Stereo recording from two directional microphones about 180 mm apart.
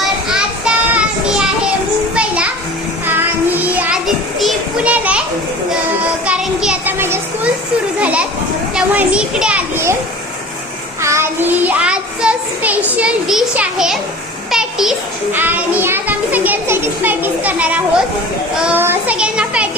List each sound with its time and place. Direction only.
0.0 s a sound: 5° right (ahead or behind)
2.1 s children playing: 5° right (ahead or behind)
3.1 s child singing: 10° right (ahead or behind)
6.2 s children playing: 5° right (ahead or behind)
8.7 s a child's voice: 5° right (ahead or behind)
11.0 s a child's voice: 15° right (ahead or behind)